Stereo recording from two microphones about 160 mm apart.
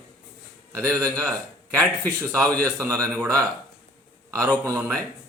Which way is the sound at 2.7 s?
20° right (ahead or behind).